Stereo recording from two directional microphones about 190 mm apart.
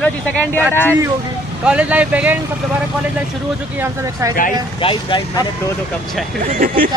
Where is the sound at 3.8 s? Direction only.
15° right (ahead or behind).